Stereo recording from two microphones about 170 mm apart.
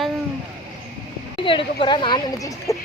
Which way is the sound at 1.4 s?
30° left (ahead or behind).